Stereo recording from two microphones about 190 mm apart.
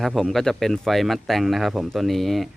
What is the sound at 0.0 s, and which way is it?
Speech, centre (ahead or behind).